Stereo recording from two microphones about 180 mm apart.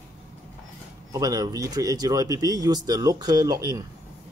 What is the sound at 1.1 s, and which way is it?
Speech, 20° right (ahead or behind).